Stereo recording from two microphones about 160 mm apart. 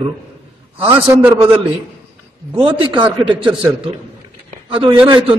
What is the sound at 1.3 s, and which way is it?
A man's voice, 30° right (ahead or behind).